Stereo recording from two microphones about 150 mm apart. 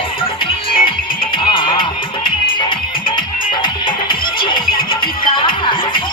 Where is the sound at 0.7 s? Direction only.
35° left (ahead or behind).